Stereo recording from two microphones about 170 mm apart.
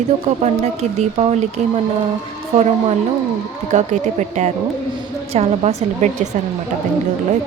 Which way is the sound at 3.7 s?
45° right (ahead or behind).